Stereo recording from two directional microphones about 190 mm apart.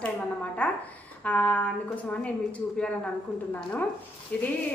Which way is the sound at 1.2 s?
5° left (ahead or behind).